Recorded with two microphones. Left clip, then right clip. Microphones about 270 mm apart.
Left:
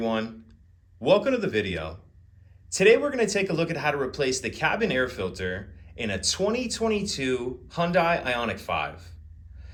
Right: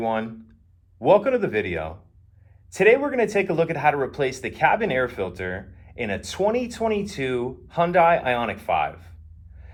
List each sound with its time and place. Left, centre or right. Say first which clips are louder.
1.0 s speech: right 4 dB; right
2.7 s speech: right 2 dB; right